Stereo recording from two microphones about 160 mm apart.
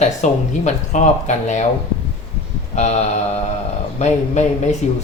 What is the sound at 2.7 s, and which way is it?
Speech, 45° left (ahead or behind).